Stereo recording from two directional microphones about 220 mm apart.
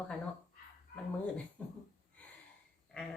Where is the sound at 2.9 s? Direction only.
5° left (ahead or behind).